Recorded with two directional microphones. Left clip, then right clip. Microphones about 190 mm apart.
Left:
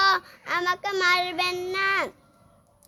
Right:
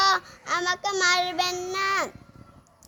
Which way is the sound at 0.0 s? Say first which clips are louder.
Even; 25° left (ahead or behind).